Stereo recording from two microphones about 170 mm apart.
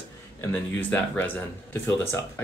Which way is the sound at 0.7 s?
10° left (ahead or behind).